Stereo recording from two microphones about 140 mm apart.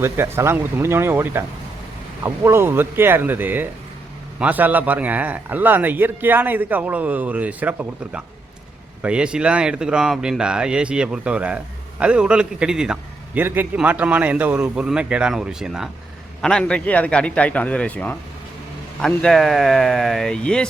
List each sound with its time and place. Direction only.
0.0 s a man's voice: 20° right (ahead or behind); by 20.7 s 5° left (ahead or behind)